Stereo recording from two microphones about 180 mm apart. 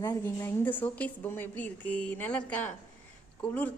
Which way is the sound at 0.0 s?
20° left (ahead or behind).